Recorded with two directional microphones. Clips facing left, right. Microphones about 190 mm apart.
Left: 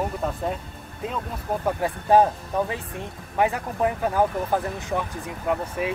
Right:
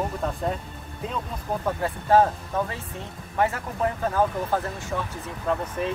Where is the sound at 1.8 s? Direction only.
15° left (ahead or behind).